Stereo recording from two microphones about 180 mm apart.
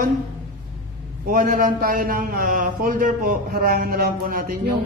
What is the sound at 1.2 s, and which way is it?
A man's voice, 50° right (ahead or behind).